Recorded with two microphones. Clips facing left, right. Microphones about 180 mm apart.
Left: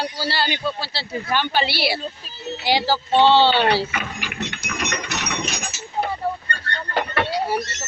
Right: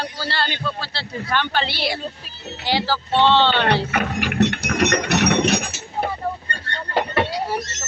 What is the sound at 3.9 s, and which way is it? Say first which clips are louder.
Ratchet: right 7 dB; 65° right (ahead or behind).